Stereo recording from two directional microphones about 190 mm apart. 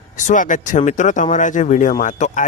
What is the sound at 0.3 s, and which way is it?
Speech, 40° left (ahead or behind).